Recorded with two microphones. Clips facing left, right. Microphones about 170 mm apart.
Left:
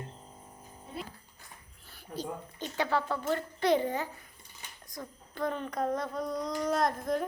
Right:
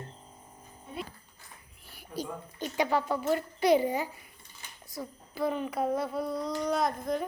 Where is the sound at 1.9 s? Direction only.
10° right (ahead or behind).